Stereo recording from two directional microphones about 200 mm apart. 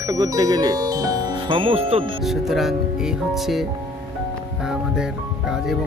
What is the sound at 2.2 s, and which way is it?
Speech, centre (ahead or behind).